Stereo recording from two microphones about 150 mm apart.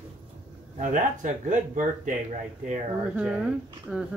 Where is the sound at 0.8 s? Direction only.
60° right (ahead or behind).